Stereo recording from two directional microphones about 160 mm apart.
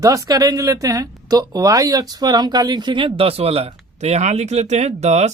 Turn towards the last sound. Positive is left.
turn(degrees=-45)  # may be behind; listen again after turning